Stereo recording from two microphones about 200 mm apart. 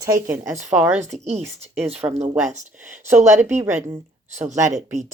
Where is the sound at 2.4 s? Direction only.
35° right (ahead or behind).